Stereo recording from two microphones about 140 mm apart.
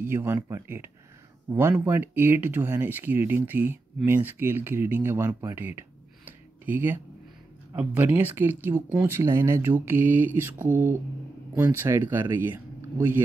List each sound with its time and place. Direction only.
0.0 s speech: 15° right (ahead or behind)